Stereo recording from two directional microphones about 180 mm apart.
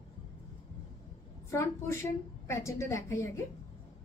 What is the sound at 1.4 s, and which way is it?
A woman's voice, 15° left (ahead or behind).